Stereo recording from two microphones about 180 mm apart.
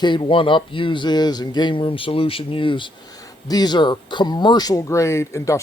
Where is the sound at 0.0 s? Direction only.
25° left (ahead or behind).